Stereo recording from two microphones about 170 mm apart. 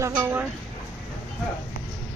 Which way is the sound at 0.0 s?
15° right (ahead or behind).